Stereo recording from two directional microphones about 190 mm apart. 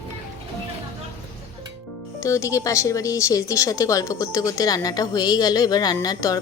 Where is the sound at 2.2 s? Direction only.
15° left (ahead or behind).